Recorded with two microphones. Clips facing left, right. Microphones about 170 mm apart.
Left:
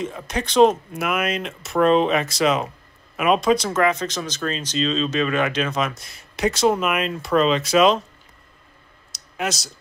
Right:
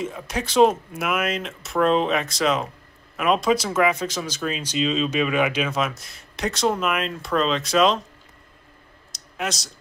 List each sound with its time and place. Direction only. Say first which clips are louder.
0.0 s speech: left 1 dB; 5° right (ahead or behind)
9.1 s clicking: left 2 dB; centre (ahead or behind)